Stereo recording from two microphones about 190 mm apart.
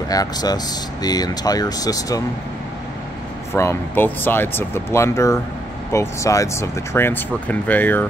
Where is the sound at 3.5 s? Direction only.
15° left (ahead or behind).